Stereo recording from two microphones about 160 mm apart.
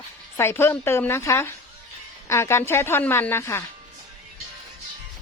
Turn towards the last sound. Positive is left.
turn(degrees=15)  # may be behind; listen again after turning